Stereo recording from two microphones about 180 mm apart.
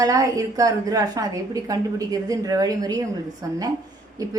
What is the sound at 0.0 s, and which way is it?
A woman's voice, 20° right (ahead or behind).